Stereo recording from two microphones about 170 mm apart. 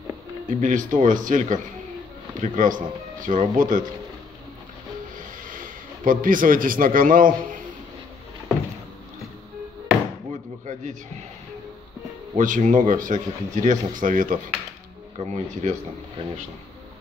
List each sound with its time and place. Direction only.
0.5 s speech: 45° right (ahead or behind)
5.2 s a man's voice: 50° right (ahead or behind)
10.7 s a man's voice: 45° right (ahead or behind)
12.4 s speech: 50° right (ahead or behind)
15.1 s speech: 40° right (ahead or behind)